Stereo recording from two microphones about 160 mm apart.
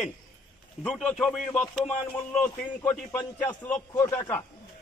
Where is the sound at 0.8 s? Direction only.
5° left (ahead or behind).